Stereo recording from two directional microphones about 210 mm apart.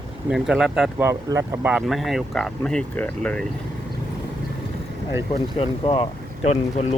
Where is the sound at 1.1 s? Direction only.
15° right (ahead or behind); by 3.5 s 5° left (ahead or behind).